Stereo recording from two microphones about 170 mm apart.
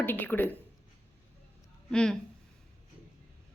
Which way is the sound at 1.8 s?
5° left (ahead or behind).